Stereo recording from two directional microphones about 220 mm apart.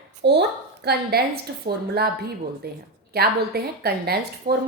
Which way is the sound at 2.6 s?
45° right (ahead or behind).